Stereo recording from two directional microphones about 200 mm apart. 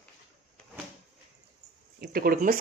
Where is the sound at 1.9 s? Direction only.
50° right (ahead or behind).